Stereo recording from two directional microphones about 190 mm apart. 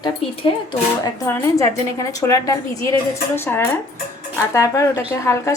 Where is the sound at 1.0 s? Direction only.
15° left (ahead or behind).